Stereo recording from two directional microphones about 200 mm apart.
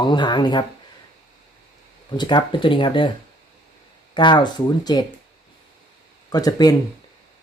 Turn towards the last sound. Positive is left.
turn(degrees=20)  # may be behind; listen again after turning